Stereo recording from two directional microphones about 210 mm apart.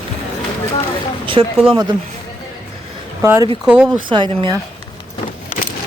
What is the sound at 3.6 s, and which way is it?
Speech, 5° right (ahead or behind).